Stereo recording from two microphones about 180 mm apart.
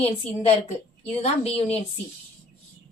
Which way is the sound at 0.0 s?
35° left (ahead or behind).